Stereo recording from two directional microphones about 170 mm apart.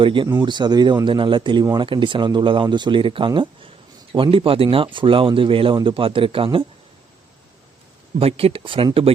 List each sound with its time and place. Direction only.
0.0 s speech: 30° right (ahead or behind)
8.2 s speech: 35° right (ahead or behind)